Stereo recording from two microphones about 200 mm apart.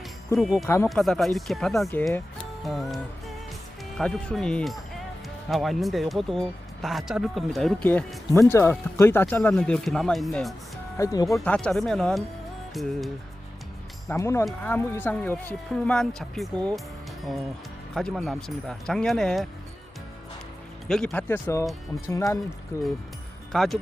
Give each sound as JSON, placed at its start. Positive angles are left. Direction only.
{"t": 0.3, "sound": "speech", "side_deg": 0}
{"t": 2.6, "sound": "music", "side_deg": 0}
{"t": 3.9, "sound": "speech", "side_deg": 0}
{"t": 10.9, "sound": "speech", "side_deg": 15}
{"t": 11.3, "sound": "speech", "side_deg": 5}
{"t": 14.1, "sound": "speech", "side_deg": 15}
{"t": 17.9, "sound": "speech", "side_deg": 0}
{"t": 20.8, "sound": "speech", "side_deg": 5}
{"t": 21.7, "sound": "speech", "side_deg": 0}
{"t": 22.1, "sound": "speech", "side_deg": 15}
{"t": 23.5, "sound": "speech", "side_deg": 0}